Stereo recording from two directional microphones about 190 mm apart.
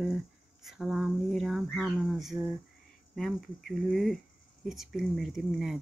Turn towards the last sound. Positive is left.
turn(degrees=0)  # may be behind; listen again after turning